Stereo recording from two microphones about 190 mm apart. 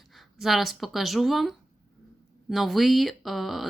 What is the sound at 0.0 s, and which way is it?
Speech, centre (ahead or behind).